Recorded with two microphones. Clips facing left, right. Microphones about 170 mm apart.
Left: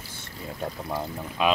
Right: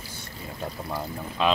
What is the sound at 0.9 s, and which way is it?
Speech, 15° left (ahead or behind).